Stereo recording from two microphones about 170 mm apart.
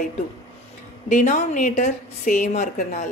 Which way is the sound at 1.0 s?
45° left (ahead or behind).